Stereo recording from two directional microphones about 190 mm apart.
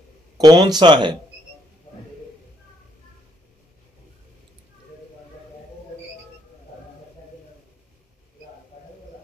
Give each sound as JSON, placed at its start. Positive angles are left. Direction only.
{"t": 0.4, "sound": "speech", "side_deg": -20}